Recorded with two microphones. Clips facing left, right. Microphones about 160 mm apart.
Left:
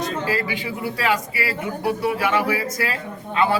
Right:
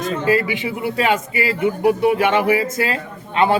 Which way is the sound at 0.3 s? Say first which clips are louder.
Right 6 dB; 20° right (ahead or behind).